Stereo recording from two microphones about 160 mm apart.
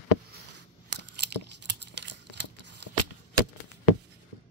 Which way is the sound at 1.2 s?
90° right.